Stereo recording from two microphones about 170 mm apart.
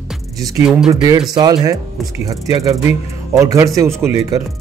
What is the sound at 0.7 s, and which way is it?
Speech, centre (ahead or behind).